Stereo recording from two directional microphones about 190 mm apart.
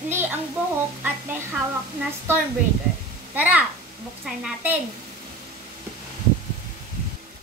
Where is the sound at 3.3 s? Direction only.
10° right (ahead or behind).